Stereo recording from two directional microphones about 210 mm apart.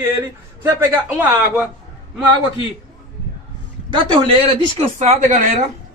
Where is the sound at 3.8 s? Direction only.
25° right (ahead or behind).